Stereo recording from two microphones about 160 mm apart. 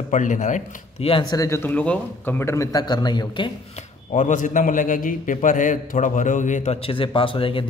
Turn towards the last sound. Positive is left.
turn(degrees=35)  # may be behind; listen again after turning